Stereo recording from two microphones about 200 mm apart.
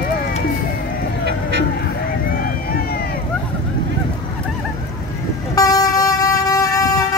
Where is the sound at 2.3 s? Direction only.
50° left (ahead or behind).